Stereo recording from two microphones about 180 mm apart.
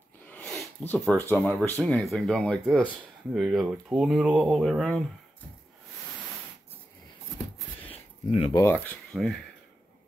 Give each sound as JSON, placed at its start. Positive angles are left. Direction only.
{"t": 0.3, "sound": "speech", "side_deg": 5}
{"t": 7.9, "sound": "a sound", "side_deg": 30}
{"t": 8.7, "sound": "speech", "side_deg": 5}